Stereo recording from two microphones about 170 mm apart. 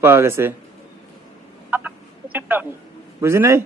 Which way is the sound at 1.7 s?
10° right (ahead or behind).